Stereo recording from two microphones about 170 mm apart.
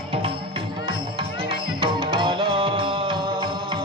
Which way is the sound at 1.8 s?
30° right (ahead or behind).